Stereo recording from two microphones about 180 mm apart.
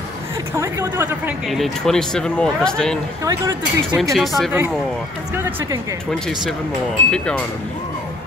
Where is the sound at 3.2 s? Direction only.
15° right (ahead or behind).